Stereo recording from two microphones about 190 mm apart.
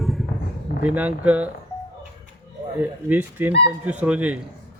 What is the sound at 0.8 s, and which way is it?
Speech, 10° right (ahead or behind).